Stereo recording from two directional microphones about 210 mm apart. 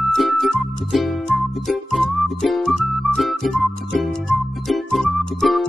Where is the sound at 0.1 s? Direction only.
Centre (ahead or behind).